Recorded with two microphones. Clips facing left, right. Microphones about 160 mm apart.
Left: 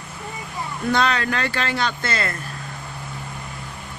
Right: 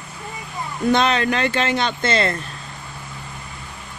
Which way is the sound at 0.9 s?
20° right (ahead or behind).